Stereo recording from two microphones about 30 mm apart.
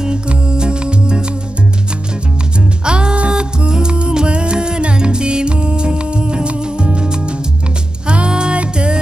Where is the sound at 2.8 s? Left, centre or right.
Right.